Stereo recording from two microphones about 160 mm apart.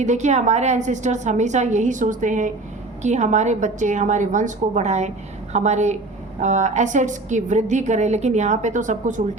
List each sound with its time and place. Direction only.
0.0 s a woman's voice: 45° right (ahead or behind)